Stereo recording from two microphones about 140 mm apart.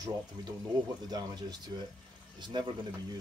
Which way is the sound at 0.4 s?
30° right (ahead or behind).